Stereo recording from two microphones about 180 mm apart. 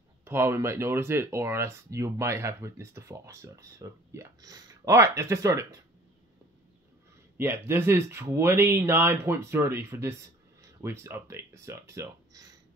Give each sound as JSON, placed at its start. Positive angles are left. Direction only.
{"t": 0.2, "sound": "speech", "side_deg": -15}
{"t": 7.3, "sound": "speech", "side_deg": -10}